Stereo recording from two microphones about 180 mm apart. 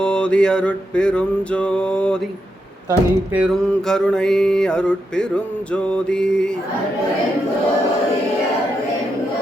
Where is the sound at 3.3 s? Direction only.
Centre (ahead or behind).